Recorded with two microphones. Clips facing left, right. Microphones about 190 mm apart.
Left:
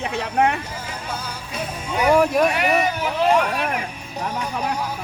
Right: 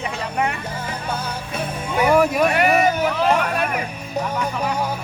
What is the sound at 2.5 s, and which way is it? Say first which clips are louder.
Speech: right 3 dB; 50° right (ahead or behind).